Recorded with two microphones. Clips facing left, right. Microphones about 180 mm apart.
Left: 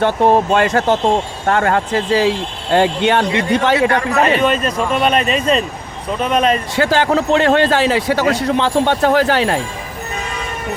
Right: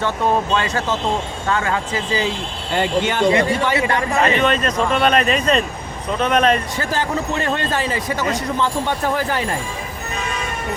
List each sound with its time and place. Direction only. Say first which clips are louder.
0.0 s speech: left 6 dB; 60° left (ahead or behind)
4.4 s speech: left 2 dB; 5° left (ahead or behind)
6.7 s a man's voice: left 7 dB; 85° left